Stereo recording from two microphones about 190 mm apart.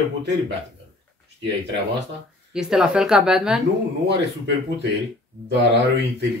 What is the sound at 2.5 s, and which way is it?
Speech, centre (ahead or behind).